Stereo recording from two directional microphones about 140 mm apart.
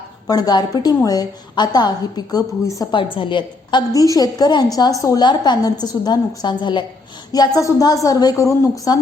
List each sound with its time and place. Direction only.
0.3 s a woman's voice: 30° left (ahead or behind)
3.0 s a woman's voice: 35° left (ahead or behind)